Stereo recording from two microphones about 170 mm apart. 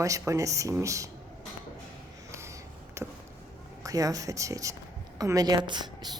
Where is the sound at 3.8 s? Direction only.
20° right (ahead or behind).